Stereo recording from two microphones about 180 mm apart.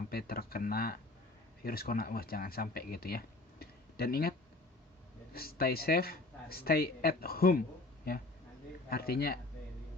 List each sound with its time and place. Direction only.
0.1 s speech: 55° left (ahead or behind)
8.9 s speech: 60° left (ahead or behind)